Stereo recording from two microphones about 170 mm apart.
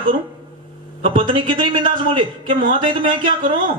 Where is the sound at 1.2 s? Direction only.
30° right (ahead or behind).